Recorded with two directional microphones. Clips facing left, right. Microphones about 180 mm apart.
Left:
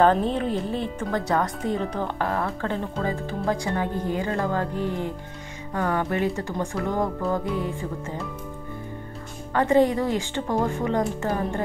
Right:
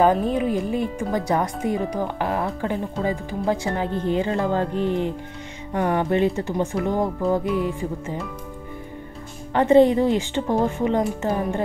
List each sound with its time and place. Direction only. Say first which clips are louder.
0.0 s speech: right 1 dB; 10° right (ahead or behind)
9.5 s speech: right 4 dB; 20° right (ahead or behind)